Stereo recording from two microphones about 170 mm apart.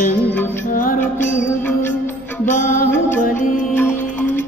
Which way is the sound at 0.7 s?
55° left (ahead or behind).